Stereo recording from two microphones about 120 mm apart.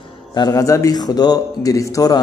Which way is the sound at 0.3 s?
30° left (ahead or behind).